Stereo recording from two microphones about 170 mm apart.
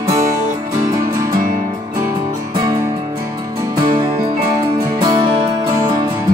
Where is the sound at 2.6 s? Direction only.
20° right (ahead or behind).